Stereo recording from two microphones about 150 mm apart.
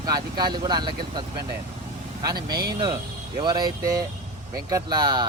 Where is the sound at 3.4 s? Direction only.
30° right (ahead or behind).